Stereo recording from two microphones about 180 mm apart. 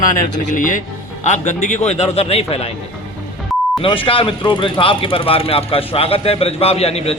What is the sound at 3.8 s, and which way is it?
A man's voice, 30° left (ahead or behind).